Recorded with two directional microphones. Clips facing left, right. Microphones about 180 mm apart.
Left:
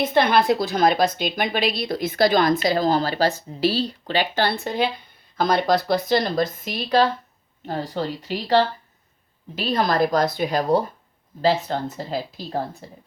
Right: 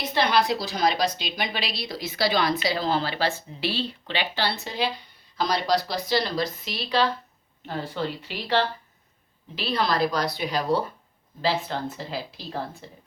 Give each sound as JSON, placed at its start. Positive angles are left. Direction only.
{"t": 0.0, "sound": "a woman's voice", "side_deg": 55}